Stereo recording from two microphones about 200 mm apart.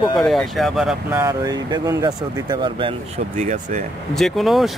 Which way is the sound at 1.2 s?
20° right (ahead or behind).